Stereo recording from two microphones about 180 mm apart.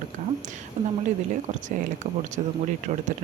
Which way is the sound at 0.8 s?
45° right (ahead or behind).